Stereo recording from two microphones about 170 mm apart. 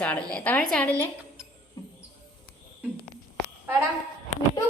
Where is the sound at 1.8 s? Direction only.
20° left (ahead or behind).